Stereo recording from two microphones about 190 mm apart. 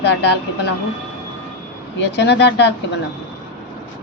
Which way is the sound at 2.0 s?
65° left (ahead or behind).